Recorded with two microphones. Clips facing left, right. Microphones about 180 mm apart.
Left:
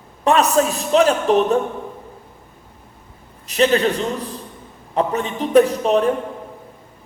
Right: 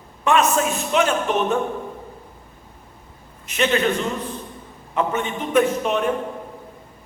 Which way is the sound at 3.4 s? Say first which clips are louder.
Left 4 dB; 35° left (ahead or behind).